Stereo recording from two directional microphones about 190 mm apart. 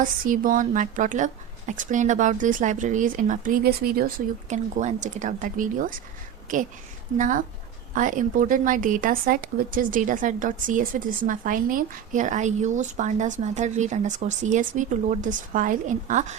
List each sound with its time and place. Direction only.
0.3 s speech: 45° right (ahead or behind)
7.2 s speech: 40° right (ahead or behind)